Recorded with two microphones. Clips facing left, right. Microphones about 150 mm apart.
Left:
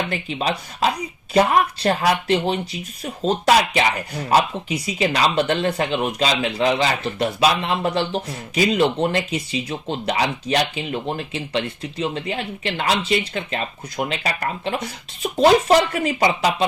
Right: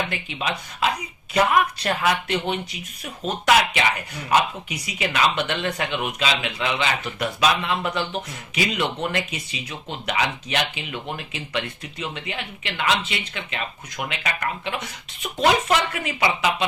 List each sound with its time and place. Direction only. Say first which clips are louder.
0.1 s speech: left 5 dB; 35° left (ahead or behind)